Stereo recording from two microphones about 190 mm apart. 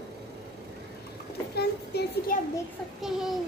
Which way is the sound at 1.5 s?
55° left (ahead or behind).